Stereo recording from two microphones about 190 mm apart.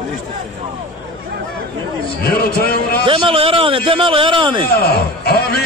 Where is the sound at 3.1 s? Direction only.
25° right (ahead or behind).